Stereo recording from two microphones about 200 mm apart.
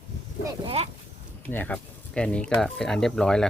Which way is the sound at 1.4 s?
10° left (ahead or behind).